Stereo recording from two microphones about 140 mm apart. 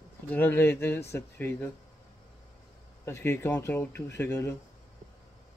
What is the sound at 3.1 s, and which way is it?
Speech, 15° left (ahead or behind).